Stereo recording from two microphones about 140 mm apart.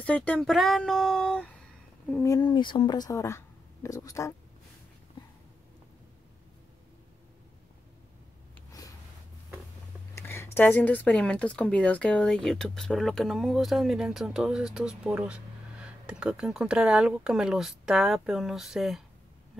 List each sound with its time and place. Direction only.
0.0 s speech: 10° left (ahead or behind)
2.4 s speech: 35° left (ahead or behind)
10.1 s speech: 20° left (ahead or behind); by 19.0 s centre (ahead or behind)